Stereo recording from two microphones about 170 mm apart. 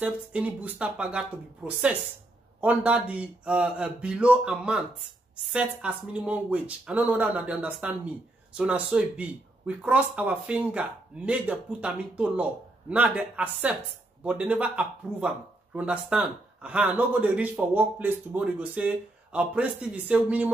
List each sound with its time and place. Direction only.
0.0 s speech: 10° right (ahead or behind)